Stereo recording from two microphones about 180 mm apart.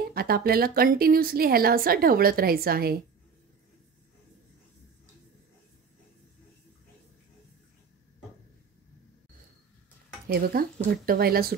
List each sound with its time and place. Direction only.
0.1 s a woman's voice: 60° right (ahead or behind)
10.2 s a woman's voice: 55° right (ahead or behind)